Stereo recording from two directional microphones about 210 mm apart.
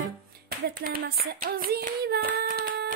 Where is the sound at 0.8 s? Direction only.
45° right (ahead or behind).